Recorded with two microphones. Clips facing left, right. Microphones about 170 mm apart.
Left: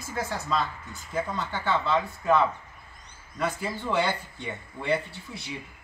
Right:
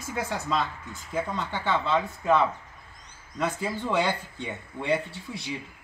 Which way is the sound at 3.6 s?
15° right (ahead or behind).